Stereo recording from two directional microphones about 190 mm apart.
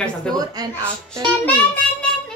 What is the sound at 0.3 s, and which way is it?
Speech, 20° right (ahead or behind).